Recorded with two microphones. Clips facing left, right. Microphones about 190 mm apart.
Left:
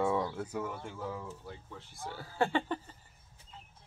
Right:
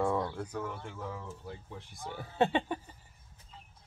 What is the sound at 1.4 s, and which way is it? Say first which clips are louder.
Speech: right 2 dB; 15° right (ahead or behind).